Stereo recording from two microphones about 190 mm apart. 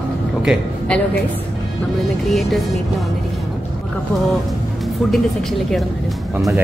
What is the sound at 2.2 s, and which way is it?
Speech, centre (ahead or behind).